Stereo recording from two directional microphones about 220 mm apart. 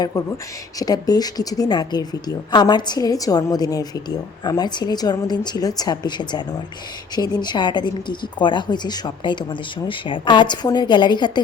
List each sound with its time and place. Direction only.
0.8 s a woman's voice: 15° left (ahead or behind)